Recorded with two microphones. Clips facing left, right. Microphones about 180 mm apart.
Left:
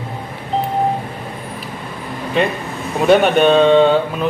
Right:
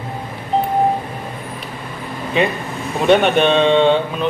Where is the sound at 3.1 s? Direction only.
Centre (ahead or behind).